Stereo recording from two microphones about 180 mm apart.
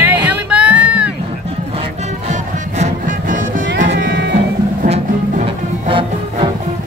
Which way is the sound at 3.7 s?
75° right (ahead or behind).